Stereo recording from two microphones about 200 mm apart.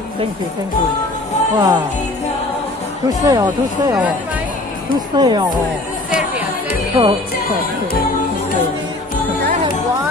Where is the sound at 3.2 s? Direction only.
20° right (ahead or behind).